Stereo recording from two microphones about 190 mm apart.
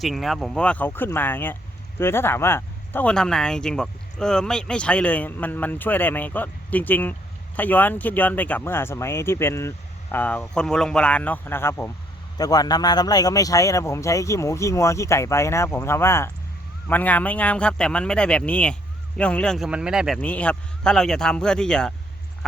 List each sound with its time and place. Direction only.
0.0 s speech: centre (ahead or behind)
20.2 s speech: 5° left (ahead or behind)